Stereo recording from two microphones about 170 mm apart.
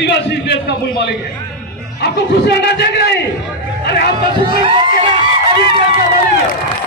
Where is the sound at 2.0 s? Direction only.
75° left (ahead or behind).